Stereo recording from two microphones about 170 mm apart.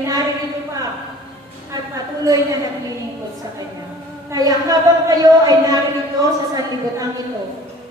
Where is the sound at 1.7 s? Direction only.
20° right (ahead or behind).